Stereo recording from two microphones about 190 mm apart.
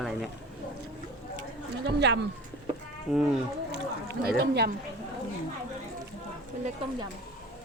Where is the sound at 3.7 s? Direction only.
60° right (ahead or behind).